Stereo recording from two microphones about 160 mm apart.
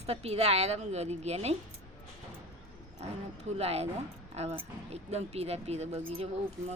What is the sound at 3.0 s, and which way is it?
Speech, 40° right (ahead or behind).